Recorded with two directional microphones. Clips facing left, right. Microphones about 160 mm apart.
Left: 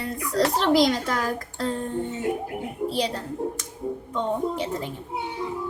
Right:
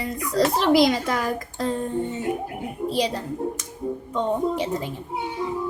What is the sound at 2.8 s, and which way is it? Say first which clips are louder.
Speech: right 4 dB; 10° right (ahead or behind).